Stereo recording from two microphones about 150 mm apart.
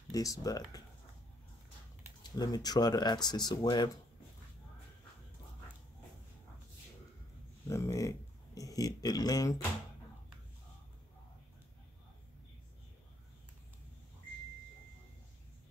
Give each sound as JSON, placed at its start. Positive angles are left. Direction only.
{"t": 0.1, "sound": "speech", "side_deg": 25}
{"t": 2.3, "sound": "speech", "side_deg": 25}
{"t": 7.6, "sound": "speech", "side_deg": 20}